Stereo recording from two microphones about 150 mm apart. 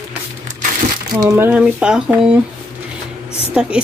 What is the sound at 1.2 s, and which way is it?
Speech, 20° right (ahead or behind).